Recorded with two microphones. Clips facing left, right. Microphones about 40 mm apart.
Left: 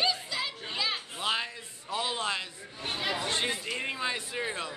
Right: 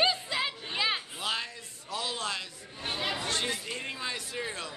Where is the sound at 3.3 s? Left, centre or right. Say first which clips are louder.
Left 1 dB; left.